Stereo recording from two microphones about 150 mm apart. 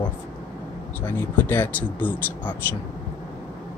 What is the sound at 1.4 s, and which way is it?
Speech, 15° left (ahead or behind).